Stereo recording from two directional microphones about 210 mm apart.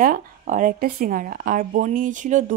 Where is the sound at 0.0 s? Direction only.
40° right (ahead or behind).